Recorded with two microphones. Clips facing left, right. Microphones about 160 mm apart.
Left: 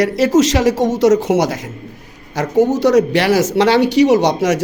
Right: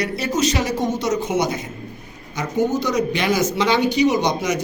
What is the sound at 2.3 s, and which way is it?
Speech, 80° left.